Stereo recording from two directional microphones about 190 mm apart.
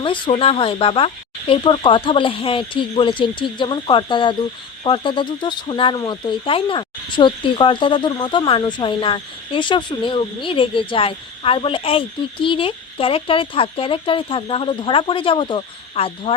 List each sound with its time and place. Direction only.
0.0 s speech: 25° left (ahead or behind)